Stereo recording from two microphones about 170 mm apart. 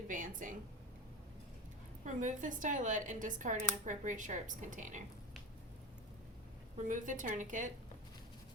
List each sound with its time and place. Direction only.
0.1 s speech: 50° right (ahead or behind)
2.0 s speech: 50° right (ahead or behind)
6.7 s speech: 50° right (ahead or behind)